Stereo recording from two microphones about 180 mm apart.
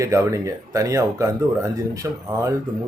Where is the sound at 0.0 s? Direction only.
15° right (ahead or behind).